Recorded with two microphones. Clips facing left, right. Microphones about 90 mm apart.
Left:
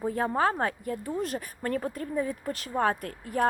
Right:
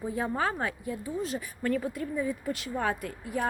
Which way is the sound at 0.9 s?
55° left (ahead or behind).